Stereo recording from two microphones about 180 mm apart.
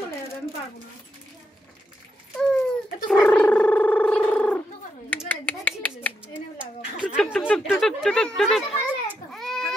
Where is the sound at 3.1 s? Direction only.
5° left (ahead or behind).